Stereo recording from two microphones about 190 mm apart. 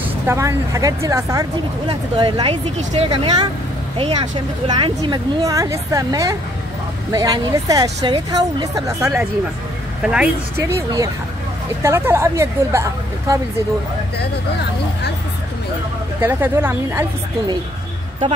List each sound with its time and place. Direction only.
0.3 s a woman's voice: 15° right (ahead or behind)
11.8 s speech: 15° right (ahead or behind)
16.2 s speech: 10° right (ahead or behind)